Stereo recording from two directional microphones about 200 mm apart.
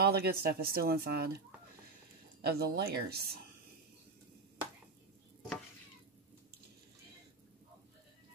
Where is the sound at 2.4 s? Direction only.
50° right (ahead or behind).